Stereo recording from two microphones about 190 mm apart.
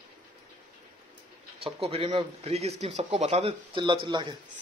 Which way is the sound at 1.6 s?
30° right (ahead or behind).